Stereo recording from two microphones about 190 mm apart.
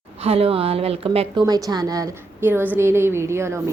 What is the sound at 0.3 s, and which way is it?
Speech, 30° right (ahead or behind).